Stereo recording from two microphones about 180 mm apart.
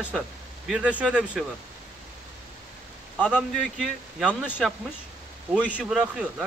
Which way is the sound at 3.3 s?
5° right (ahead or behind).